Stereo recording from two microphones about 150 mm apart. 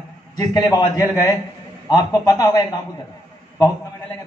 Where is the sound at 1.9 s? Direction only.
25° left (ahead or behind).